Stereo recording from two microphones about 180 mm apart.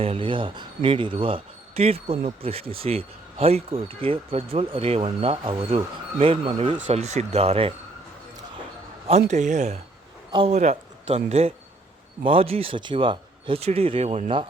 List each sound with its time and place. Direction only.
0.0 s speech: 30° right (ahead or behind)
9.0 s speech: 40° right (ahead or behind)